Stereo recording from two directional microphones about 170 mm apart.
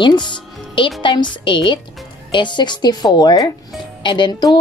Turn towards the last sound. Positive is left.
turn(degrees=25)  # may be behind; listen again after turning